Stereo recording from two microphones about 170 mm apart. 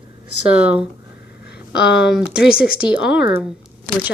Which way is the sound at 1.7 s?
75° left (ahead or behind).